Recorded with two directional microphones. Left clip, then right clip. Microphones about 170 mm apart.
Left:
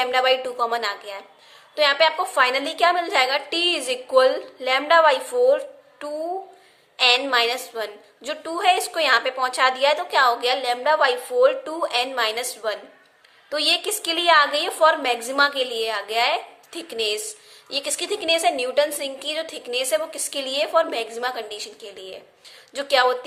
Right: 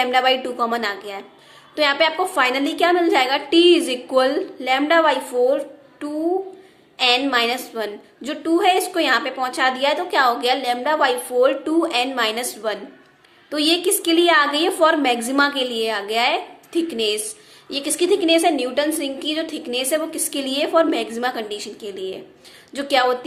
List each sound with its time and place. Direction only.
0.0 s a woman's voice: 20° left (ahead or behind)